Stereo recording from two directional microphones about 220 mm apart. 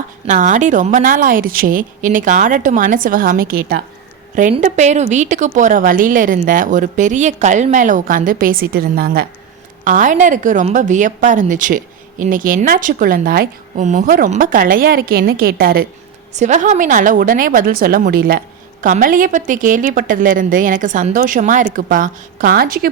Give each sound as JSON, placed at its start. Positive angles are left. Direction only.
{"t": 0.3, "sound": "speech", "side_deg": -35}